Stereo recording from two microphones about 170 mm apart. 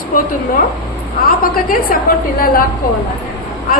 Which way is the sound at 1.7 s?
55° left (ahead or behind).